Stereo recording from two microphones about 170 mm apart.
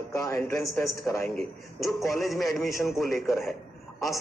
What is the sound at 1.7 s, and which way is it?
A man's voice, centre (ahead or behind).